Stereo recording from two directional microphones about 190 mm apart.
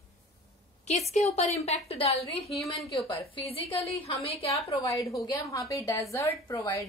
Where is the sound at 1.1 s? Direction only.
35° left (ahead or behind).